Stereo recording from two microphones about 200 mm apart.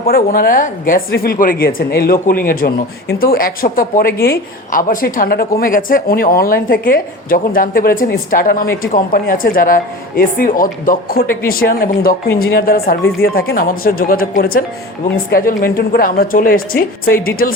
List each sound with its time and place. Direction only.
0.1 s a woman's voice: 45° left (ahead or behind)